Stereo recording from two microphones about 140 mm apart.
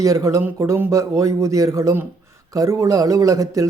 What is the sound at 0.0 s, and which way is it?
Speech, 25° right (ahead or behind).